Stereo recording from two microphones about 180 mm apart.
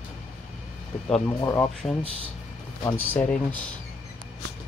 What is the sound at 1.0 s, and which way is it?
Speech, 10° left (ahead or behind).